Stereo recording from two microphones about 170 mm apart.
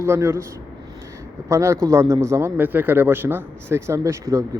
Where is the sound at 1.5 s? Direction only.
15° right (ahead or behind).